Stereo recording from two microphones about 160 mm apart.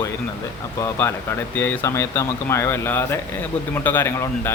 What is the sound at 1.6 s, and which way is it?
Speech, 15° left (ahead or behind).